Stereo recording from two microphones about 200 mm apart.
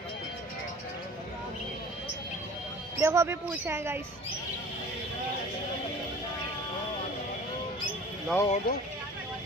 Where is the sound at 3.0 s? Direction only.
15° right (ahead or behind).